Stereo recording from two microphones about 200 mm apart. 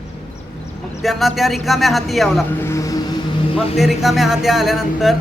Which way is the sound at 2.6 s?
15° left (ahead or behind).